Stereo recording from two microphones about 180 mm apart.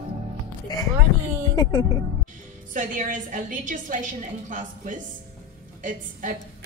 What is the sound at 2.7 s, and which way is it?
A woman's voice, 45° right (ahead or behind).